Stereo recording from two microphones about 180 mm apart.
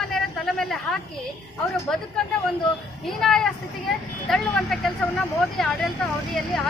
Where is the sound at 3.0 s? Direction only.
Centre (ahead or behind).